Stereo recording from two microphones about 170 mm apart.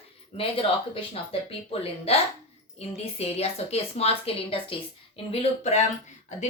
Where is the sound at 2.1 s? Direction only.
35° left (ahead or behind).